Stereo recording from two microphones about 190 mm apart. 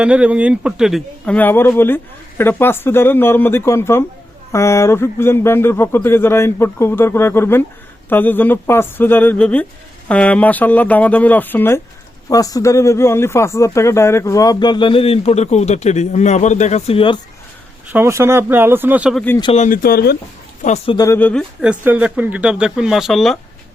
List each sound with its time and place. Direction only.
0.0 s a man's voice: 5° right (ahead or behind); by 17.2 s 30° left (ahead or behind)
17.9 s speech: 15° right (ahead or behind)
19.4 s speech: 30° left (ahead or behind)
19.6 s speech: 50° left (ahead or behind)
20.6 s speech: 35° left (ahead or behind)
21.0 s speech: 10° left (ahead or behind)
21.6 s a man's voice: 5° right (ahead or behind)